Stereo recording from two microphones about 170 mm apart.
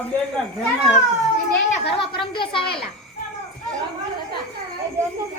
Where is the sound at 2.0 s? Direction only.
30° left (ahead or behind).